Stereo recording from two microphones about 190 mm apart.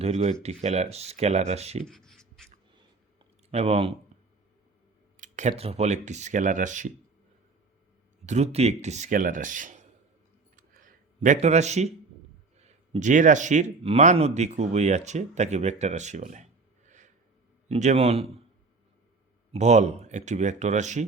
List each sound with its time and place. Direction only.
0.0 s speech: 35° right (ahead or behind)
1.9 s writing: centre (ahead or behind)
3.5 s speech: 35° right (ahead or behind)
5.1 s speech: 40° right (ahead or behind)
8.3 s speech: 35° right (ahead or behind)
10.6 s a sound: 45° right (ahead or behind)
12.5 s speech: 35° right (ahead or behind)
19.5 s speech: 35° right (ahead or behind)